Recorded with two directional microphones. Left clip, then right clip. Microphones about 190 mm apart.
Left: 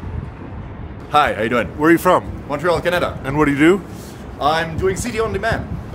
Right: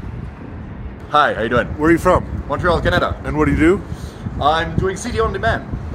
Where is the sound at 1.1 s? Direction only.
5° left (ahead or behind).